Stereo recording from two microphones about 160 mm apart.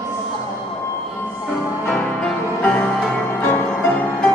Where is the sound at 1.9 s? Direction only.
5° left (ahead or behind).